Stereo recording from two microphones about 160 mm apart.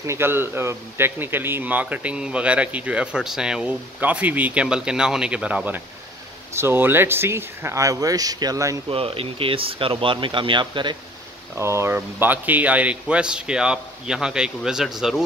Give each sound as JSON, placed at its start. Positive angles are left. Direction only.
{"t": 0.0, "sound": "a man's voice", "side_deg": -15}
{"t": 8.8, "sound": "speech", "side_deg": -35}
{"t": 11.5, "sound": "a man's voice", "side_deg": -15}